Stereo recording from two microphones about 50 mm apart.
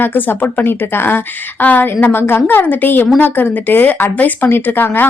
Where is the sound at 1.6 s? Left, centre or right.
Left.